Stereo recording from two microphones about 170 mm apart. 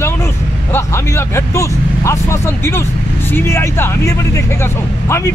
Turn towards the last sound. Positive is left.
turn(degrees=15)  # may be behind; listen again after turning